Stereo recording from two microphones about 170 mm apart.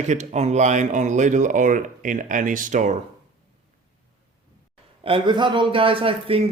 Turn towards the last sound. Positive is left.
turn(degrees=-35)  # may be behind; listen again after turning